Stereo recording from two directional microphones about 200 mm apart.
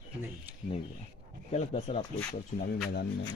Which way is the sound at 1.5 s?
35° left (ahead or behind).